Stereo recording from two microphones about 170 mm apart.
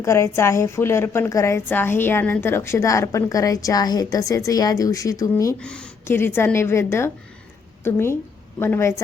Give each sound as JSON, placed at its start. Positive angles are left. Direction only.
{"t": 0.0, "sound": "a woman's voice", "side_deg": 15}
{"t": 5.5, "sound": "a woman's voice", "side_deg": 5}